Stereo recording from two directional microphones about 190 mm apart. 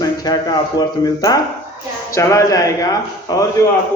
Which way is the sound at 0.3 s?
20° left (ahead or behind).